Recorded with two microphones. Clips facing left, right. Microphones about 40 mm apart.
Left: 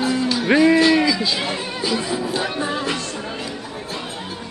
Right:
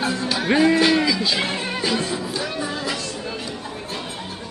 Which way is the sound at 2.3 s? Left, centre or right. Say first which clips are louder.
Left 3 dB; left.